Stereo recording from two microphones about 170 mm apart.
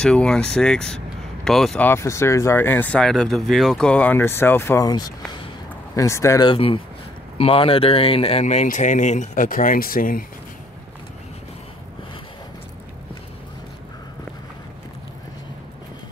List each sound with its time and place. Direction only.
0.0 s speech: 5° left (ahead or behind); by 10.2 s 55° left (ahead or behind)